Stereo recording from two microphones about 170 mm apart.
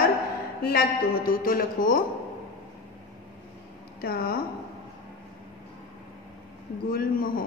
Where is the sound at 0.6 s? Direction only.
60° left (ahead or behind).